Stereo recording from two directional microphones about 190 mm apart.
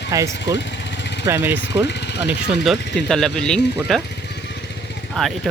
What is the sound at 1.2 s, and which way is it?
Speech, 15° right (ahead or behind).